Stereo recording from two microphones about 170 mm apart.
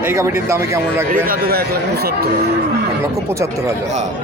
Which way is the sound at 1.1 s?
60° right (ahead or behind).